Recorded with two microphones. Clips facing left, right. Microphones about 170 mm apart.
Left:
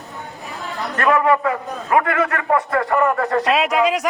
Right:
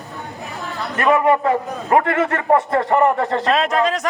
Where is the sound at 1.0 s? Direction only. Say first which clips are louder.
Right 1 dB; 20° right (ahead or behind).